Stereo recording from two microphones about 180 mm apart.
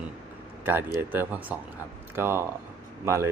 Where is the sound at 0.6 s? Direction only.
10° right (ahead or behind).